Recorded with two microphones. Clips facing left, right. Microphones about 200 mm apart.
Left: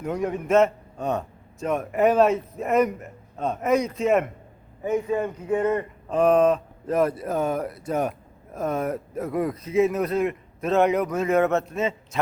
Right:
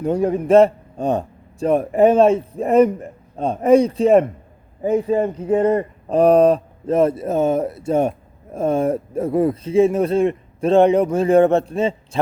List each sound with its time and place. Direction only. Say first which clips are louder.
0.0 s a man's voice: right 8 dB; 30° right (ahead or behind)